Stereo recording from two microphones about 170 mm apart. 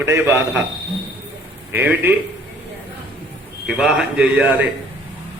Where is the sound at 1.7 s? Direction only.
10° right (ahead or behind).